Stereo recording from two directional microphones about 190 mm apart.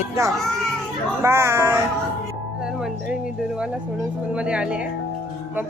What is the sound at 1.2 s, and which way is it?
Speech, 15° right (ahead or behind).